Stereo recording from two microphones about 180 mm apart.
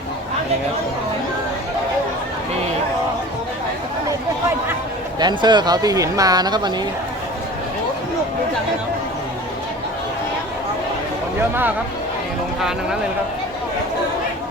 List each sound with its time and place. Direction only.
5.2 s speech: 25° right (ahead or behind)
11.3 s speech: 10° right (ahead or behind)